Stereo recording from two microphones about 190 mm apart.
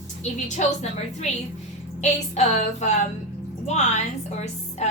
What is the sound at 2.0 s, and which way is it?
A woman's voice, 35° left (ahead or behind).